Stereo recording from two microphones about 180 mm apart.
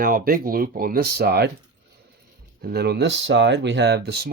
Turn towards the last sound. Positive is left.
turn(degrees=-65)  # may be behind; listen again after turning